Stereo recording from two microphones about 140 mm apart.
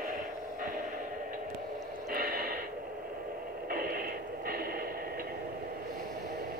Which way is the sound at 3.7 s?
90° right.